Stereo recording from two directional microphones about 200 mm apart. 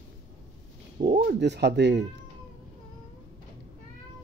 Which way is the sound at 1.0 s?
50° right (ahead or behind).